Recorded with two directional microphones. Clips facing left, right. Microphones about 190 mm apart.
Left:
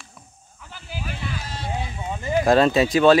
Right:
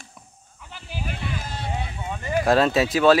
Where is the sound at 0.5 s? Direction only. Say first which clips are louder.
Even; 15° right (ahead or behind).